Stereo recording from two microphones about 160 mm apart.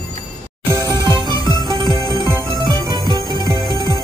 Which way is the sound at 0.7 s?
25° right (ahead or behind).